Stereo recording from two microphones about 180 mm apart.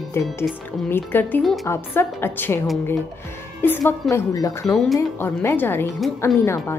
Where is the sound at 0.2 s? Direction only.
15° left (ahead or behind).